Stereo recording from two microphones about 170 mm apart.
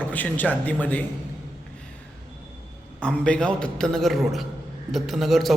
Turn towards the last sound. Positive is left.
turn(degrees=0)  # may be behind; listen again after turning